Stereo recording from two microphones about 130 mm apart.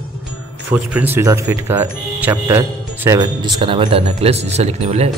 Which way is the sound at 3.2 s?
35° right (ahead or behind).